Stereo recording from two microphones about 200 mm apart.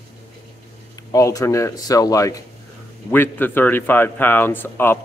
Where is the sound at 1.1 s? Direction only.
15° left (ahead or behind).